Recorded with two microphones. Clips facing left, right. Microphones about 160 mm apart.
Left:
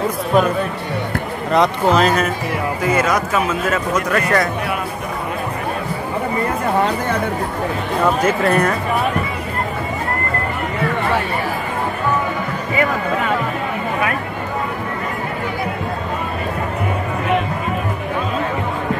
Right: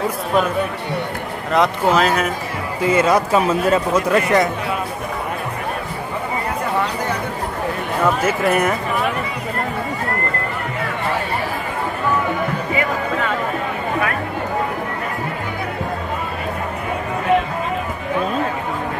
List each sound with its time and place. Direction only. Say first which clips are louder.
1.5 s speech: left 1 dB; 5° right (ahead or behind)
2.8 s speech: right 4 dB; 25° right (ahead or behind)
8.2 s speech: left 2 dB; 5° right (ahead or behind)